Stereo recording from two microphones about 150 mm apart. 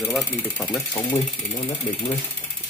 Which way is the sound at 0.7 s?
20° left (ahead or behind).